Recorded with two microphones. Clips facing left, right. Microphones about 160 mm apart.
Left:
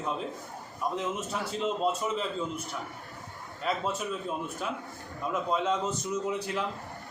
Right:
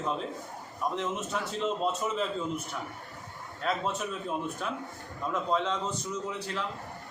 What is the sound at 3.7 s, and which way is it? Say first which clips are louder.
A man's voice: even; 5° left (ahead or behind).